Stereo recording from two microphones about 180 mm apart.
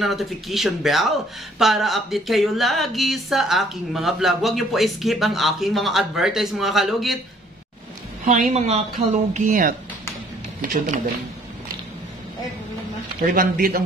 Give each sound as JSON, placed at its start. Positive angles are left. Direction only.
{"t": 0.0, "sound": "speech", "side_deg": 0}
{"t": 8.3, "sound": "speech", "side_deg": -45}
{"t": 13.3, "sound": "speech", "side_deg": -50}